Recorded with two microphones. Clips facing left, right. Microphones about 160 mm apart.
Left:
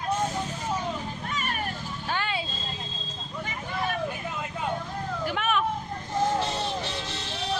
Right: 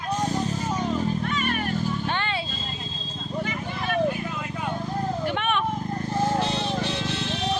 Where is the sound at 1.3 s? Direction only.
40° left (ahead or behind).